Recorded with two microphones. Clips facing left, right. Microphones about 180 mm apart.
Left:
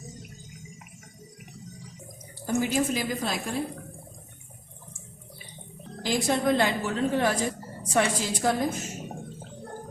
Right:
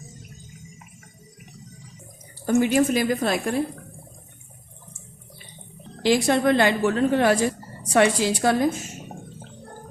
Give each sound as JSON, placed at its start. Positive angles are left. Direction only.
{"t": 2.5, "sound": "a woman's voice", "side_deg": -65}
{"t": 6.0, "sound": "a woman's voice", "side_deg": -75}